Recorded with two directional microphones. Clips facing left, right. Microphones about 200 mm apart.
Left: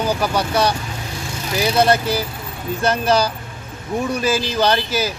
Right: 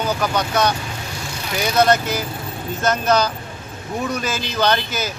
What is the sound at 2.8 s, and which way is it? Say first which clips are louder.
Speech: left 1 dB; 30° left (ahead or behind).